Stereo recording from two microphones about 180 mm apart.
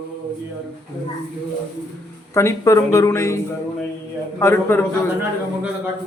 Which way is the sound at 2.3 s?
15° left (ahead or behind).